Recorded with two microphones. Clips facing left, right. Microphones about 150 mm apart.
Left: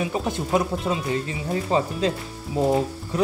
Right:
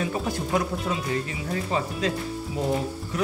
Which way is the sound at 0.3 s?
25° left (ahead or behind).